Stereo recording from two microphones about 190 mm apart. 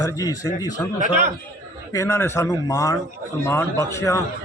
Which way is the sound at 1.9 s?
15° left (ahead or behind).